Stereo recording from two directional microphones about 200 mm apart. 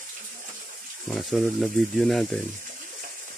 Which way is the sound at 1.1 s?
Centre (ahead or behind).